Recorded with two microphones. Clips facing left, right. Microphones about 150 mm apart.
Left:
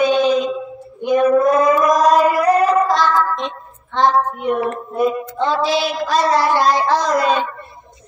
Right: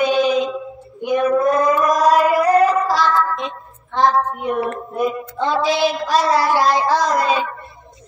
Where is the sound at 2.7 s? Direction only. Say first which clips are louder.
Left 2 dB; 5° right (ahead or behind).